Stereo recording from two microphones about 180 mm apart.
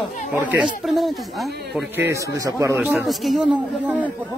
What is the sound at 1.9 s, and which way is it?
Speech, 15° right (ahead or behind).